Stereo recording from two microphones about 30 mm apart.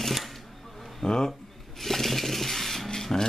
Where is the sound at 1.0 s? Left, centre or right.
Left.